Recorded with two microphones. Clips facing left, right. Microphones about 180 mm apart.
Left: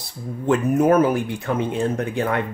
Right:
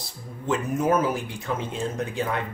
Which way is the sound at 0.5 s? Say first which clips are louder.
Left 6 dB; 60° left (ahead or behind).